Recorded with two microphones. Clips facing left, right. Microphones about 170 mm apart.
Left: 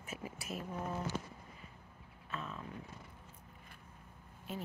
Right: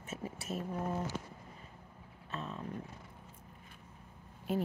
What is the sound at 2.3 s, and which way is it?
Speech, 40° right (ahead or behind).